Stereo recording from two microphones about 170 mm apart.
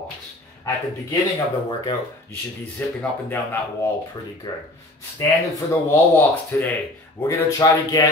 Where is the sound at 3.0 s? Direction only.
15° left (ahead or behind).